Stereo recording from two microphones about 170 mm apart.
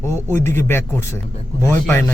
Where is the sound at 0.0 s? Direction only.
15° left (ahead or behind).